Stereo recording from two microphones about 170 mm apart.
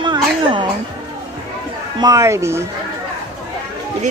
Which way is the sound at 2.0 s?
20° right (ahead or behind).